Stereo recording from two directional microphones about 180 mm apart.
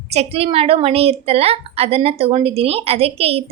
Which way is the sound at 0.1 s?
35° right (ahead or behind).